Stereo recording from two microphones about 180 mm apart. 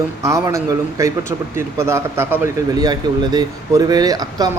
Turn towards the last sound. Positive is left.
turn(degrees=-20)  # may be behind; listen again after turning